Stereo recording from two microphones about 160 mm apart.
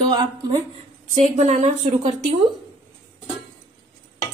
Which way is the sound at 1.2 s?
45° right (ahead or behind).